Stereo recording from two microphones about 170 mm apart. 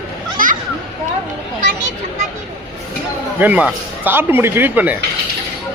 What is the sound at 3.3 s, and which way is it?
A man's voice, 10° right (ahead or behind).